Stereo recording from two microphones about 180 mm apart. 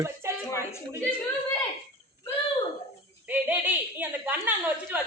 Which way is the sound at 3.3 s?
10° right (ahead or behind).